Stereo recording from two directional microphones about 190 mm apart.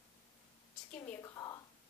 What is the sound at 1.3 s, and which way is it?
Speech, 20° left (ahead or behind).